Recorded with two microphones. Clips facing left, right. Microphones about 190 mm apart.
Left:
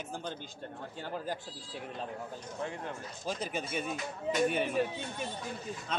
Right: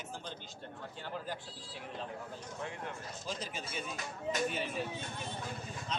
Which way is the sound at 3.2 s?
55° left (ahead or behind).